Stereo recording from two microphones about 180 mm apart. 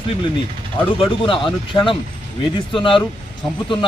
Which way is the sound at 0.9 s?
25° left (ahead or behind).